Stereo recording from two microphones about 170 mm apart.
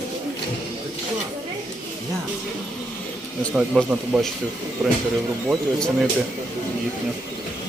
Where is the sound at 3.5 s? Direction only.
5° right (ahead or behind).